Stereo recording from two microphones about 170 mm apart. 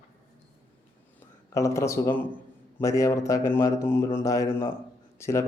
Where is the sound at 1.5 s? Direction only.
20° left (ahead or behind).